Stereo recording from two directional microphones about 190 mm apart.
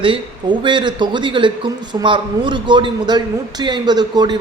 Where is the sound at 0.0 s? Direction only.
25° right (ahead or behind).